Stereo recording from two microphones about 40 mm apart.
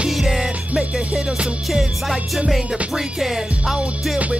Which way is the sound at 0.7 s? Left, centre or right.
Centre.